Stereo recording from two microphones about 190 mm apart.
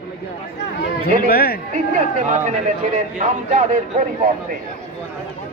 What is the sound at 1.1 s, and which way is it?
Speech, 55° left (ahead or behind).